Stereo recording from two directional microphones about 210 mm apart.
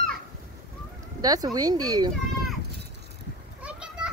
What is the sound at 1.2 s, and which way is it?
Speech, 20° right (ahead or behind).